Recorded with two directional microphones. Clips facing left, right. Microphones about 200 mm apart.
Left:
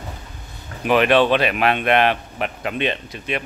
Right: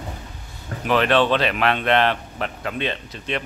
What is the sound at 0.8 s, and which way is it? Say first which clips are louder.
Speech: left 3 dB; 15° left (ahead or behind).